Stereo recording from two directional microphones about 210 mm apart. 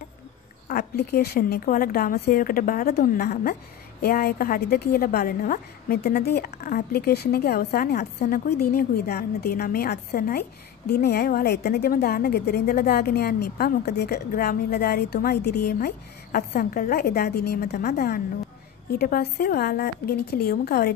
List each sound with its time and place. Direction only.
0.7 s a woman's voice: 45° left (ahead or behind)